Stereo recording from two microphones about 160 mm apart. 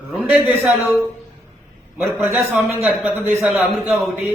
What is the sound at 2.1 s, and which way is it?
Speech, 15° right (ahead or behind).